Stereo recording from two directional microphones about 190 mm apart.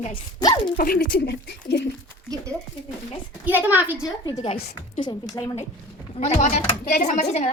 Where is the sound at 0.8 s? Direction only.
50° left (ahead or behind).